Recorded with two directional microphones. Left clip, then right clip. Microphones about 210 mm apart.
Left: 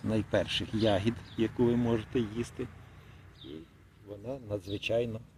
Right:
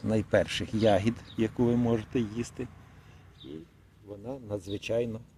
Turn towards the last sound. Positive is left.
turn(degrees=-25)  # may be behind; listen again after turning